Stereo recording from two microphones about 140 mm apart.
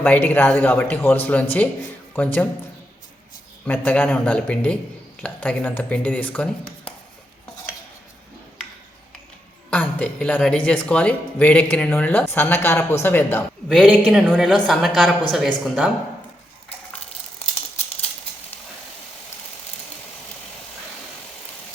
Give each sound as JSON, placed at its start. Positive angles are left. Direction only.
{"t": 0.0, "sound": "speech", "side_deg": 10}
{"t": 3.7, "sound": "speech", "side_deg": 10}
{"t": 9.6, "sound": "speech", "side_deg": 10}
{"t": 13.7, "sound": "a woman's voice", "side_deg": -5}